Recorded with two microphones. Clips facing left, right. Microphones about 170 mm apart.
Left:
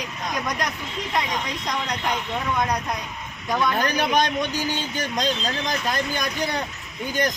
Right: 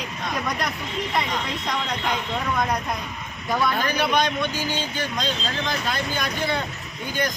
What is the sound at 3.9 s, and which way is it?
Speech, 45° left (ahead or behind).